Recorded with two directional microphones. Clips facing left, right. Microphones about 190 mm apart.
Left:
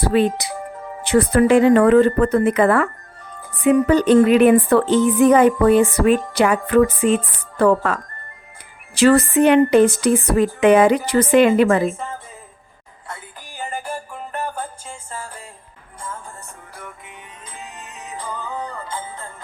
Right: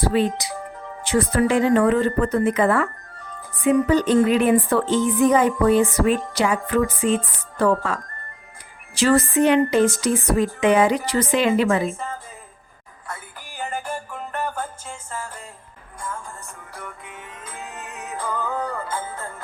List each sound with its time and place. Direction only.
0.0 s speech: 60° left (ahead or behind)
9.0 s speech: 60° left (ahead or behind)
13.6 s music: 10° left (ahead or behind)
18.1 s music: 15° left (ahead or behind)